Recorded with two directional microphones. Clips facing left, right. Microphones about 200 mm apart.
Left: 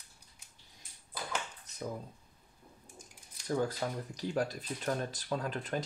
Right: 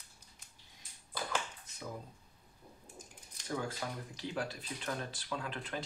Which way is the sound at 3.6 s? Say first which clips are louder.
Left 7 dB; 40° left (ahead or behind).